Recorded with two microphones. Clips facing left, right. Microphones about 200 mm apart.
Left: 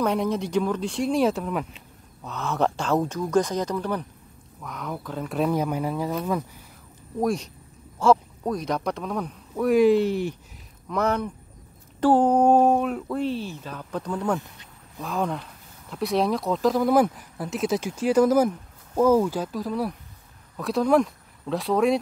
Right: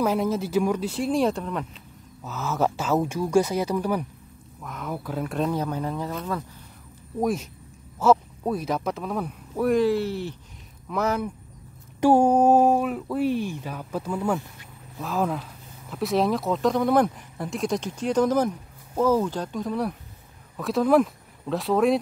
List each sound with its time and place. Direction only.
0.0 s speech: 5° right (ahead or behind)
5.4 s speech: 10° left (ahead or behind)
7.2 s speech: centre (ahead or behind)
9.8 s speech: 15° left (ahead or behind)
10.9 s speech: 5° right (ahead or behind)